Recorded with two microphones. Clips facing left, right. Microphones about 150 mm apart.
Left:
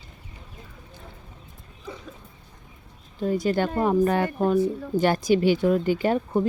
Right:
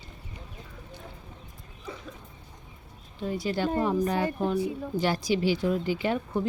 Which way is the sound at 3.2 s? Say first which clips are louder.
Left 5 dB; 45° left (ahead or behind).